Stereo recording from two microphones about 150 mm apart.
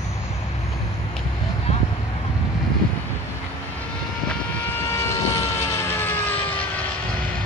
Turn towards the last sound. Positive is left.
turn(degrees=10)  # may be behind; listen again after turning